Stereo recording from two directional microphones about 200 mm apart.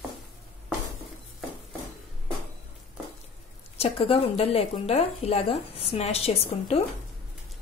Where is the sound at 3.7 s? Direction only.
30° left (ahead or behind).